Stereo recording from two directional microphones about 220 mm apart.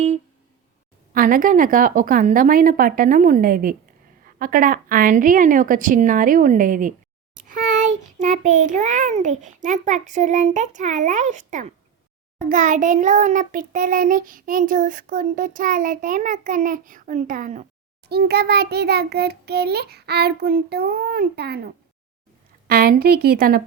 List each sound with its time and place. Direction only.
1.1 s child singing: 40° right (ahead or behind)
18.1 s a child's voice: 45° right (ahead or behind)